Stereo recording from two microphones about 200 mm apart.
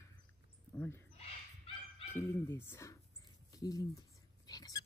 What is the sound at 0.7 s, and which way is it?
Speech, 10° left (ahead or behind).